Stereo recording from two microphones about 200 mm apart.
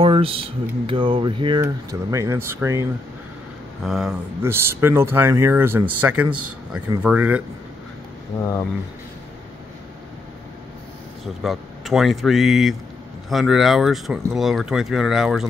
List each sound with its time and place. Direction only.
0.0 s speech: 25° right (ahead or behind)
3.8 s speech: centre (ahead or behind)
11.4 s speech: centre (ahead or behind)